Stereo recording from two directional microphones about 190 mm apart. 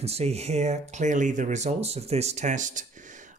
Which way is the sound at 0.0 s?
35° right (ahead or behind).